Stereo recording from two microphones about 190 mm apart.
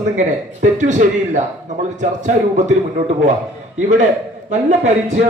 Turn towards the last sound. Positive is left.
turn(degrees=-40)  # may be behind; listen again after turning